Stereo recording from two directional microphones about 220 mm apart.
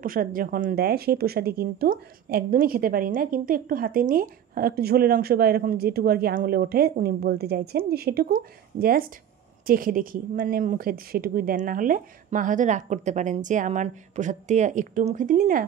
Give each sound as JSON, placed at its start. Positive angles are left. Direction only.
{"t": 0.0, "sound": "a woman's voice", "side_deg": -40}